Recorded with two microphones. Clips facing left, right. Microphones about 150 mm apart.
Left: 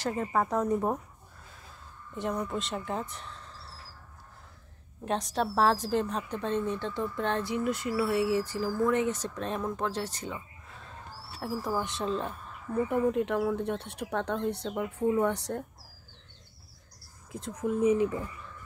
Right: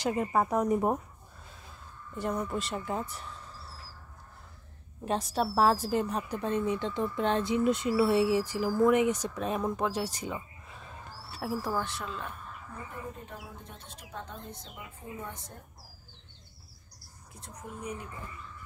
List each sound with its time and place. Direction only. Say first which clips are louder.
0.0 s a woman's voice: right 1 dB; 15° right (ahead or behind)
2.1 s speech: even; centre (ahead or behind)
5.0 s a woman's voice: even; 5° right (ahead or behind)
11.3 s speech: even; centre (ahead or behind)
11.7 s speech: left 1 dB; 15° left (ahead or behind)
12.0 s speech: left 7 dB; 35° left (ahead or behind)
12.8 s speech: left 17 dB; 70° left (ahead or behind)
17.4 s speech: left 15 dB; 90° left